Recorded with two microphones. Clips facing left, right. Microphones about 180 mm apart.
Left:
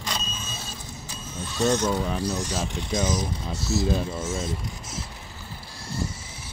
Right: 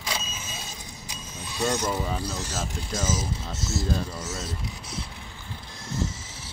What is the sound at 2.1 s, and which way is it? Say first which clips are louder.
Speech: left 4 dB; 10° left (ahead or behind).